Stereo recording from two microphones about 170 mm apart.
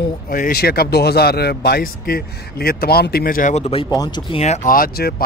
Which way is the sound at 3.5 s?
35° left (ahead or behind).